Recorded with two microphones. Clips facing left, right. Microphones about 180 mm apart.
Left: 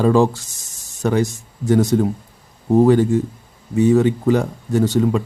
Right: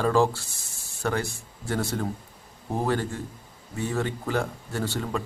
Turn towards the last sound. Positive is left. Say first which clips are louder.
# left 13 dB
turn(degrees=15)  # may be behind; listen again after turning